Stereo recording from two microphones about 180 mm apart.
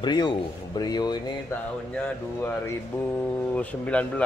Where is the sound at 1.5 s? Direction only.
10° left (ahead or behind).